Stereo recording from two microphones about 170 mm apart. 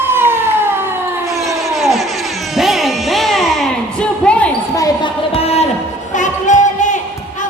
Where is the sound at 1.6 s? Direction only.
Centre (ahead or behind).